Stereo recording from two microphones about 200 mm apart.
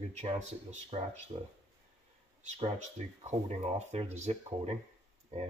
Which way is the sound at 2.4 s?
35° right (ahead or behind).